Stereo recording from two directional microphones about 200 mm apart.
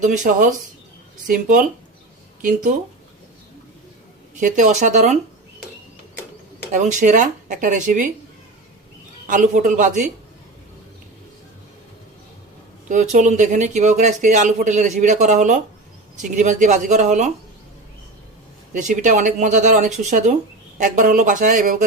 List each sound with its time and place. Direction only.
0.0 s speech: 40° right (ahead or behind)
4.4 s speech: 40° right (ahead or behind)
6.7 s speech: 40° right (ahead or behind)
9.2 s speech: 40° right (ahead or behind)
12.9 s speech: 40° right (ahead or behind)
18.7 s speech: 40° right (ahead or behind)